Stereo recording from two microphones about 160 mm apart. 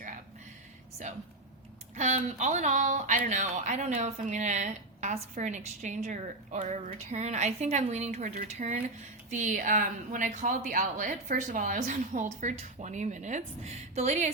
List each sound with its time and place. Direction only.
2.0 s speech: 45° right (ahead or behind)